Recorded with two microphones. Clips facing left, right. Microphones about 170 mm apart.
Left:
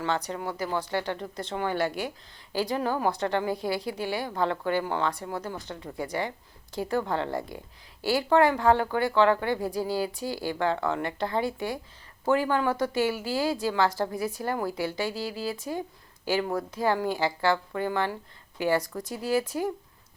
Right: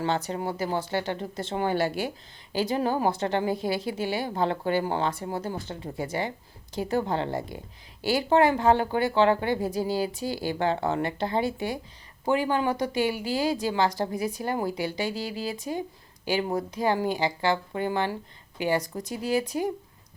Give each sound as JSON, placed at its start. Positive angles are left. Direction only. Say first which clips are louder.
{"t": 0.0, "sound": "a woman's voice", "louder": "right 2 dB", "side_deg": -30}